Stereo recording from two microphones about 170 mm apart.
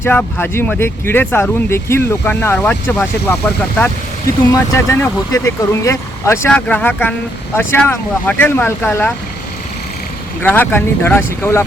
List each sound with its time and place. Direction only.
0.0 s speech: 10° left (ahead or behind)
4.5 s speech: 15° left (ahead or behind)
10.4 s speech: 10° left (ahead or behind)